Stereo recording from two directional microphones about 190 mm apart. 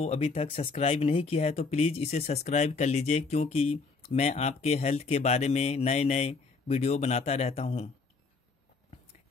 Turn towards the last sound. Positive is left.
turn(degrees=30)  # may be behind; listen again after turning